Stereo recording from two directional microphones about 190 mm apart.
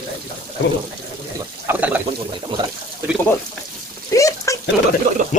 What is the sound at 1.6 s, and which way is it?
Speech, 10° right (ahead or behind).